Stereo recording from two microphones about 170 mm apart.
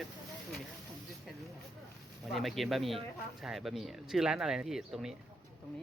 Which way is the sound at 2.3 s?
Centre (ahead or behind).